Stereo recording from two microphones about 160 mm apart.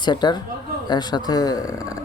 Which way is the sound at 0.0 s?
25° left (ahead or behind).